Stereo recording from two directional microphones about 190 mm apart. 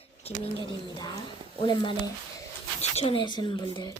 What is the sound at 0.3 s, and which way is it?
Speech, 35° left (ahead or behind).